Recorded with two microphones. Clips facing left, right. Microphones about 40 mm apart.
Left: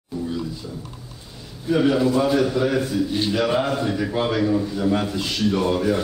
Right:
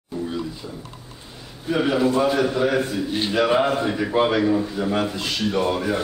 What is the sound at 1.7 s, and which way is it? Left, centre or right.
A man's voice, centre.